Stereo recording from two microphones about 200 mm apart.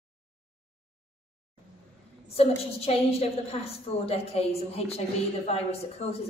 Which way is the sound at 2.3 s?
30° left (ahead or behind).